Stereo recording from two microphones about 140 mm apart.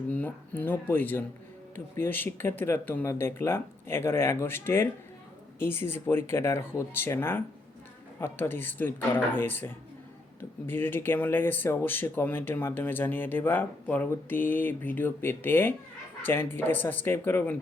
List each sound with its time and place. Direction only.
0.1 s speech: 10° left (ahead or behind)